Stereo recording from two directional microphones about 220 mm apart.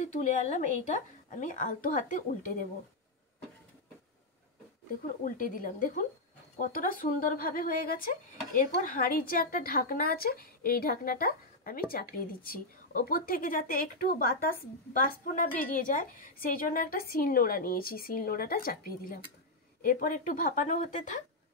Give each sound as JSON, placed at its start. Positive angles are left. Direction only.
{"t": 0.0, "sound": "a woman's voice", "side_deg": 35}
{"t": 5.0, "sound": "a woman's voice", "side_deg": 40}
{"t": 15.5, "sound": "a woman's voice", "side_deg": 40}